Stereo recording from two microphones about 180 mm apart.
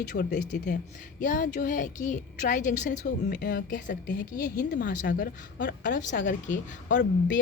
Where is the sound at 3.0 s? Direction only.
55° left (ahead or behind).